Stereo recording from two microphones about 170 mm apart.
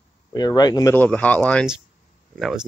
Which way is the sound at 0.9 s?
10° left (ahead or behind).